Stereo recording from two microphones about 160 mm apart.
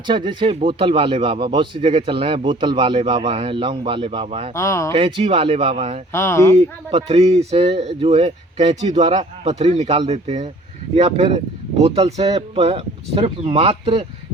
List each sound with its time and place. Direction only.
0.1 s speech: 30° right (ahead or behind)
4.5 s speech: 20° left (ahead or behind)
4.9 s speech: 35° right (ahead or behind)
6.1 s speech: 15° left (ahead or behind)
6.6 s speech: 40° right (ahead or behind)